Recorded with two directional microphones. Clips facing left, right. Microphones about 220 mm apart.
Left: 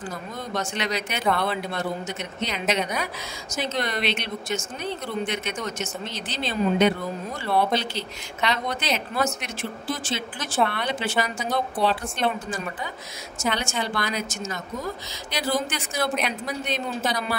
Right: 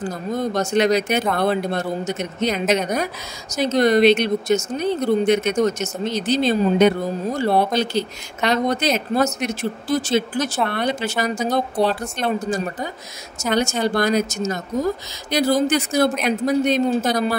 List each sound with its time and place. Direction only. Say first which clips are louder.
0.0 s speech: right 10 dB; 40° right (ahead or behind)